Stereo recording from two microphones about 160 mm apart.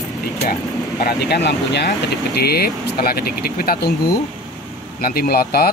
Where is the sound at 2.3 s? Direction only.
75° left (ahead or behind).